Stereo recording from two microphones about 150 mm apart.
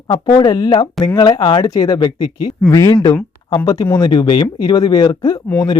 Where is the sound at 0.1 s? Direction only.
30° left (ahead or behind).